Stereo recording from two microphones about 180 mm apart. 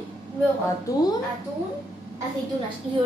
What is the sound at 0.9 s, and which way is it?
Speech, 20° left (ahead or behind).